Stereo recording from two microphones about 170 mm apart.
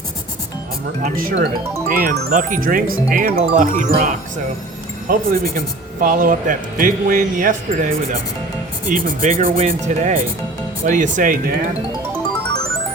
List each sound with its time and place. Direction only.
1.0 s speech: 55° right (ahead or behind)
8.9 s speech: 40° right (ahead or behind)